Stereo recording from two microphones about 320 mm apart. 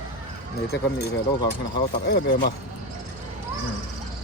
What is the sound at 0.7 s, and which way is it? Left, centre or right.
Speech, left.